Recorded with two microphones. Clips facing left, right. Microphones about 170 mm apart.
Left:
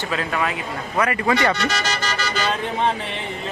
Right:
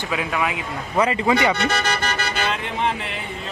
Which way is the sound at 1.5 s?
55° right (ahead or behind).